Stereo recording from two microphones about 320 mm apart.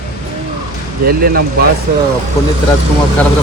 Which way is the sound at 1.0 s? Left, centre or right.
Right.